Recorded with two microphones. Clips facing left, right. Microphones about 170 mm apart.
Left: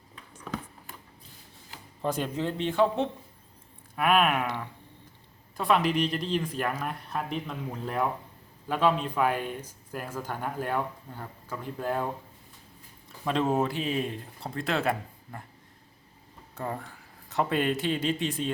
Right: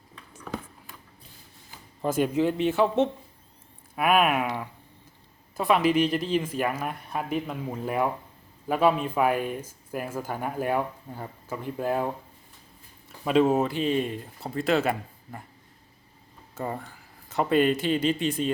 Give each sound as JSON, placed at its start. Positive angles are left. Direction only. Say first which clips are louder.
{"t": 2.0, "sound": "speech", "louder": "right 6 dB", "side_deg": -5}
{"t": 3.9, "sound": "speech", "louder": "right 2 dB", "side_deg": -5}
{"t": 13.2, "sound": "speech", "louder": "right 5 dB", "side_deg": -5}
{"t": 16.6, "sound": "speech", "louder": "right 2 dB", "side_deg": -5}